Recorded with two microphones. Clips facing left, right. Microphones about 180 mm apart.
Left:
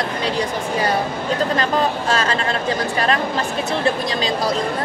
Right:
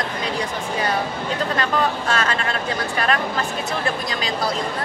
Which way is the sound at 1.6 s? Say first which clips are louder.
Left 2 dB; 35° left (ahead or behind).